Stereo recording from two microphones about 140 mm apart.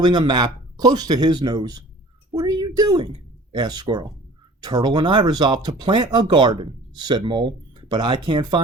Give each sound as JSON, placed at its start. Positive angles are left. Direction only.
{"t": 0.0, "sound": "speech", "side_deg": -30}